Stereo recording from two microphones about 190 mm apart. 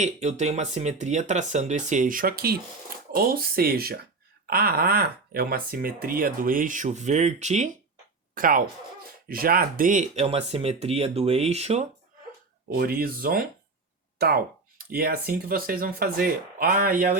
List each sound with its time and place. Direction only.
0.0 s speech: 35° right (ahead or behind)
8.4 s speech: 50° right (ahead or behind)
12.6 s speech: 50° right (ahead or behind)